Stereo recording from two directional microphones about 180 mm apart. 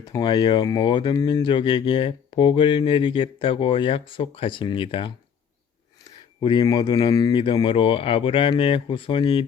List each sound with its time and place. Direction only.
0.0 s speech: 20° left (ahead or behind)
6.4 s speech: 25° left (ahead or behind)